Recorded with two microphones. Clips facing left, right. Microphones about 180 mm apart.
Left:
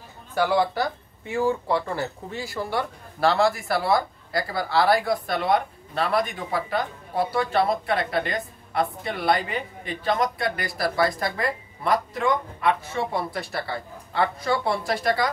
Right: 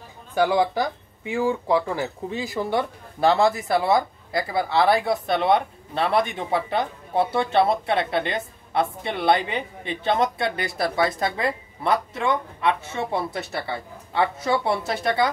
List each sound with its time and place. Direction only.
0.3 s speech: 15° right (ahead or behind)